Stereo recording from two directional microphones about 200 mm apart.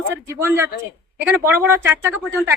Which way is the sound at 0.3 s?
10° right (ahead or behind).